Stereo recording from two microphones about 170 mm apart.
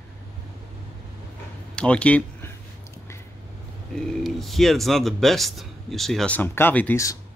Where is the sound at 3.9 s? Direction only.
Centre (ahead or behind); by 7.2 s 20° left (ahead or behind).